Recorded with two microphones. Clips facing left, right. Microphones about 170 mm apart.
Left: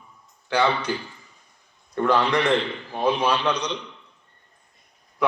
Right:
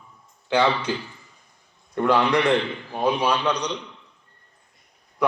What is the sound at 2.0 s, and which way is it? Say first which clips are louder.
A man's voice: right 1 dB; 15° right (ahead or behind).